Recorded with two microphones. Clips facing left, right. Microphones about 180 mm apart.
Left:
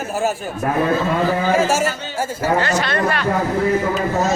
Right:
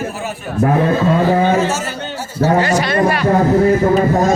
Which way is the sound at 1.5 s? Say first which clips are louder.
Even; 90° left.